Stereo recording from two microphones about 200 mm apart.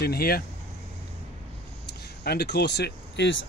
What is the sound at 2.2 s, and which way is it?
Speech, 55° left (ahead or behind).